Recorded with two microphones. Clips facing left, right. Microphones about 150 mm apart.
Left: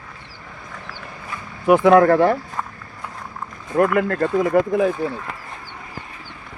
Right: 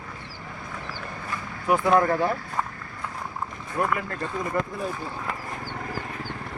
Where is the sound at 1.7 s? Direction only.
70° left (ahead or behind).